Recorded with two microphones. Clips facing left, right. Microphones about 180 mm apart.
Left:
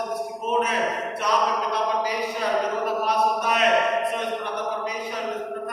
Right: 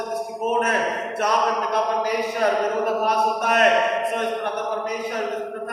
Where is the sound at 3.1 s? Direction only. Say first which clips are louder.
Right 1 dB; 50° right (ahead or behind).